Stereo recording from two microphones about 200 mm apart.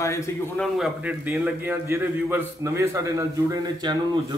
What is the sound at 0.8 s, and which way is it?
A man's voice, 10° right (ahead or behind).